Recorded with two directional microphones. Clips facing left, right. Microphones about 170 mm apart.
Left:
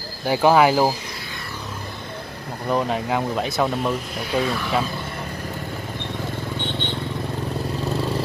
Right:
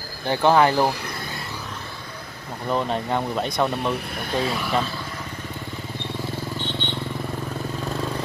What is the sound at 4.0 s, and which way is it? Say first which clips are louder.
Speech: left 1 dB; 55° right (ahead or behind).